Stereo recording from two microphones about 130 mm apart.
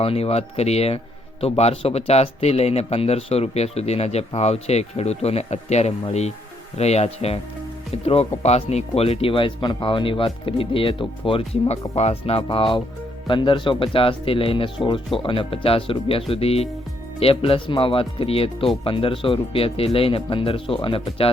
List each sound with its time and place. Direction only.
0.0 s speech: 50° left (ahead or behind)